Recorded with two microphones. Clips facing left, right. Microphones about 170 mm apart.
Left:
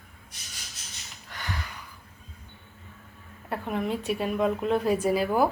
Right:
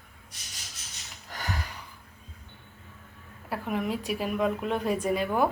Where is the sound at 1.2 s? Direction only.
40° right (ahead or behind).